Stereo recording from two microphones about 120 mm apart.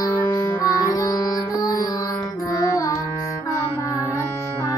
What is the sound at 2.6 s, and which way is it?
Carnatic music, 25° left (ahead or behind).